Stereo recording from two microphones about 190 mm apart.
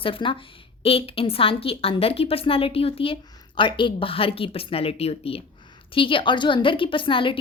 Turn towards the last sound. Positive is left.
turn(degrees=25)  # may be behind; listen again after turning